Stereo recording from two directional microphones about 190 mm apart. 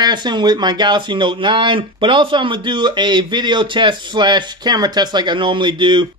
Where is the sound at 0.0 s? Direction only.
20° right (ahead or behind).